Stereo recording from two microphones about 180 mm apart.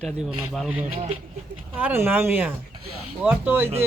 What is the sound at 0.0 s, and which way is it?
Speech, 5° left (ahead or behind).